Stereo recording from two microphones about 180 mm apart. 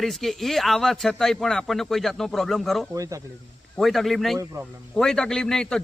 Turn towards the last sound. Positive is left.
turn(degrees=5)  # may be behind; listen again after turning